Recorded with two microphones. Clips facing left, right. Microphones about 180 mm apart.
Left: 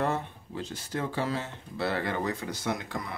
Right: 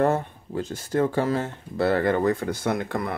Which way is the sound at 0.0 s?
45° right (ahead or behind).